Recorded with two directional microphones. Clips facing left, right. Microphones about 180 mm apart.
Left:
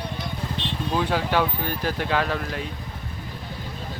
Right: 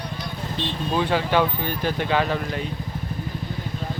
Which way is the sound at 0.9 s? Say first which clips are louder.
Right 2 dB; centre (ahead or behind).